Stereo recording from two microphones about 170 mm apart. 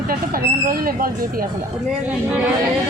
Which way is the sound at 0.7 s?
60° right (ahead or behind).